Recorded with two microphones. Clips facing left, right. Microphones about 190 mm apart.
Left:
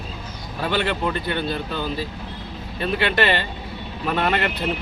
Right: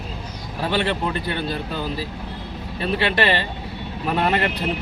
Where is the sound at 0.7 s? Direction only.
35° right (ahead or behind).